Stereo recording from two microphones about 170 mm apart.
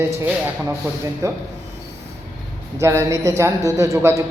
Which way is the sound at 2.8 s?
15° right (ahead or behind).